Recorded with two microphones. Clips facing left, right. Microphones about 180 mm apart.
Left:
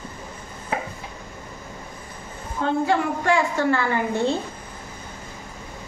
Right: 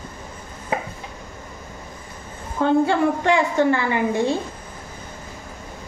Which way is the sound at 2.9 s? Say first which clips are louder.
Right 2 dB; 20° right (ahead or behind).